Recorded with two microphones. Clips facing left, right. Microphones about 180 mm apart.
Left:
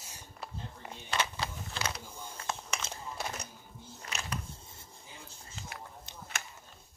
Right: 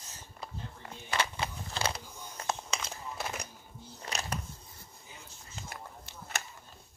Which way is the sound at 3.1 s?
5° right (ahead or behind).